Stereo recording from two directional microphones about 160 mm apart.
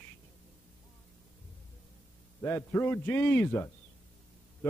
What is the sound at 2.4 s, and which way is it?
A man's voice, 15° left (ahead or behind).